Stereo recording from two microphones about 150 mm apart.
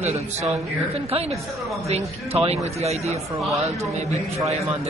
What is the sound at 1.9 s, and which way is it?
Speech, 45° right (ahead or behind).